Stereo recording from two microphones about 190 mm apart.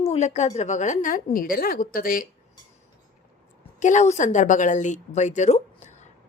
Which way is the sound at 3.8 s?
40° left (ahead or behind).